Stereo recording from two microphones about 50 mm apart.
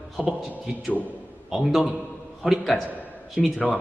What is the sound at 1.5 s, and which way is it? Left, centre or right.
A man's voice, centre.